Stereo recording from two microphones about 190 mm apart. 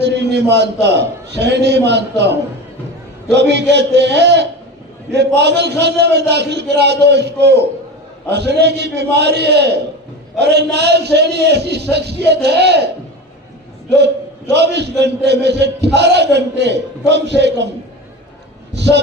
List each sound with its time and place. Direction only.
0.0 s a sound: 65° right (ahead or behind)
0.5 s a man's voice: 65° right (ahead or behind)
14.5 s a man's voice: 65° right (ahead or behind)
18.7 s a man's voice: 65° right (ahead or behind)